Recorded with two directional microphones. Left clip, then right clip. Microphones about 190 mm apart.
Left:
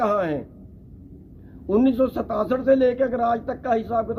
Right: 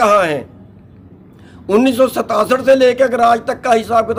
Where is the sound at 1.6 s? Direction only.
15° right (ahead or behind).